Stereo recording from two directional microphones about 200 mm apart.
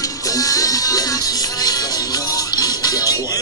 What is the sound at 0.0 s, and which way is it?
Music, 15° left (ahead or behind).